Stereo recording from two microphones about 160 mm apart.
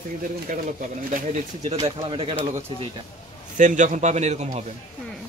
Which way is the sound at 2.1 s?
35° right (ahead or behind).